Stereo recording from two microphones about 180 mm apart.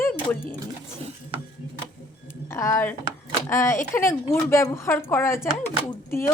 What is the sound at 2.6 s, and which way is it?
Speech, 15° left (ahead or behind).